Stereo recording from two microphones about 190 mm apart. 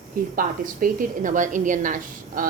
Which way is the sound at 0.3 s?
45° right (ahead or behind).